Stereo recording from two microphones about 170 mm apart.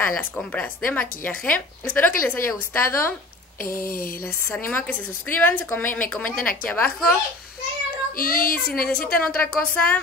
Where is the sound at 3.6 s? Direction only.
55° left (ahead or behind).